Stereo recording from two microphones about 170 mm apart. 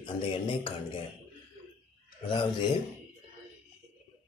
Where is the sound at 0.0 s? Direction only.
30° left (ahead or behind).